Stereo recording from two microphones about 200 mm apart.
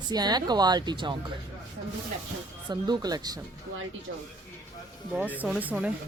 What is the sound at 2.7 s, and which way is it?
Speech, 20° right (ahead or behind).